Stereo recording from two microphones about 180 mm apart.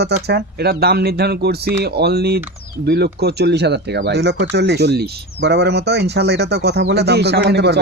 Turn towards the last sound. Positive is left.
turn(degrees=-70)  # may be behind; listen again after turning